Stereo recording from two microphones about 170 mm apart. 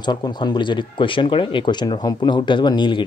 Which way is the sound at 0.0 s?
25° left (ahead or behind).